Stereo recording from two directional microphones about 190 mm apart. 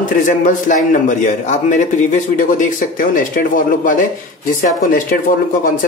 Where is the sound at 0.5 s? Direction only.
45° left (ahead or behind).